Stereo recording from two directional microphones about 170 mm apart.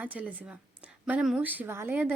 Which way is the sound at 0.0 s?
10° right (ahead or behind).